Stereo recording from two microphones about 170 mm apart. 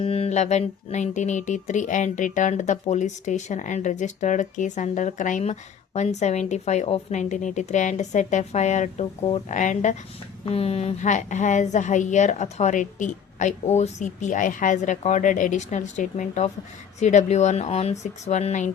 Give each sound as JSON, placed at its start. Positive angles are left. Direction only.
{"t": 0.0, "sound": "speech", "side_deg": 35}